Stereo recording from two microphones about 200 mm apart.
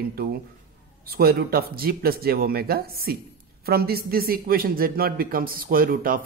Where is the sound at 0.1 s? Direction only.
50° right (ahead or behind).